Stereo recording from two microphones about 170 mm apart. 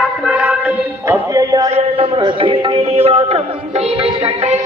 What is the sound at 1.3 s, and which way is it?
A man's voice, 20° right (ahead or behind).